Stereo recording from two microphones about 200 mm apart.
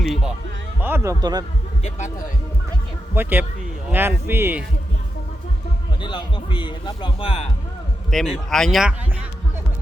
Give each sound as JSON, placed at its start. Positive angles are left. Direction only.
{"t": 0.0, "sound": "speech", "side_deg": -5}
{"t": 3.2, "sound": "speech", "side_deg": -10}
{"t": 6.0, "sound": "a man's voice", "side_deg": 25}
{"t": 8.1, "sound": "speech", "side_deg": 0}